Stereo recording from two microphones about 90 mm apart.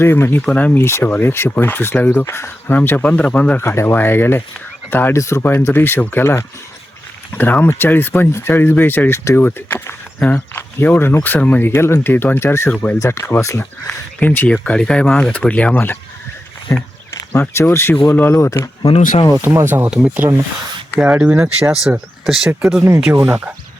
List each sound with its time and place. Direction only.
0.0 s speech: 25° left (ahead or behind)
3.7 s speech: 30° left (ahead or behind)
11.7 s speech: 30° left (ahead or behind)
13.0 s speech: 30° left (ahead or behind)
13.8 s speech: 20° left (ahead or behind)
19.5 s speech: 20° right (ahead or behind)
19.9 s speech: 5° right (ahead or behind)
20.1 s speech: 25° right (ahead or behind); by 22.9 s 5° right (ahead or behind)
23.1 s speech: 30° right (ahead or behind)